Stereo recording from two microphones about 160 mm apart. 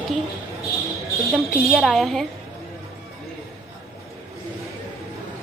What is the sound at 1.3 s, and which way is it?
Speech, centre (ahead or behind).